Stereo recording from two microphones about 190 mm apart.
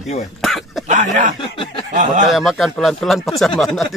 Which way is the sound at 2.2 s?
Centre (ahead or behind).